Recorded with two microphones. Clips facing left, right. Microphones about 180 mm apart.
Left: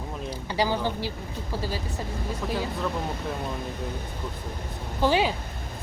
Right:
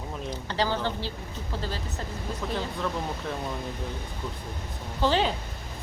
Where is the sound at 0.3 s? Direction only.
10° left (ahead or behind).